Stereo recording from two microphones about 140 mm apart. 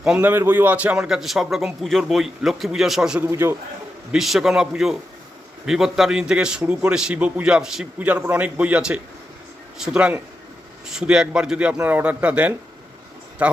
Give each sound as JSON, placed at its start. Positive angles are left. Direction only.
{"t": 0.0, "sound": "a man's voice", "side_deg": -10}
{"t": 3.2, "sound": "a man's voice", "side_deg": -20}
{"t": 4.1, "sound": "a man's voice", "side_deg": 0}